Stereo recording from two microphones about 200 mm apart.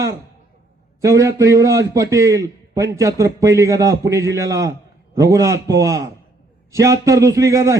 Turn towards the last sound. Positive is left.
turn(degrees=-15)  # may be behind; listen again after turning